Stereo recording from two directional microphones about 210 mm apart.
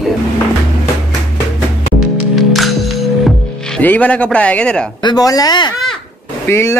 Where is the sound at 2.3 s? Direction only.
Centre (ahead or behind).